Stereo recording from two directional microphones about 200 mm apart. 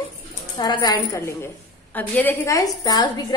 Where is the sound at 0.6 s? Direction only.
20° left (ahead or behind).